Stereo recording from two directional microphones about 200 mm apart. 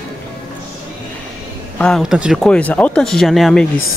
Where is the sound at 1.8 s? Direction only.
Centre (ahead or behind).